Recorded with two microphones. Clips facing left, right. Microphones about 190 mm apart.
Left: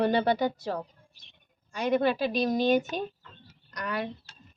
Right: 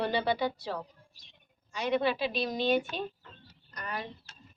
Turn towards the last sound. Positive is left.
turn(degrees=75)  # may be behind; listen again after turning